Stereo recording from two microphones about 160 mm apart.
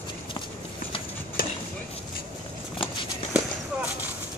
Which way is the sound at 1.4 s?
65° left (ahead or behind).